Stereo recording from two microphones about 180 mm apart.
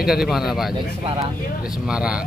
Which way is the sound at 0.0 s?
Centre (ahead or behind).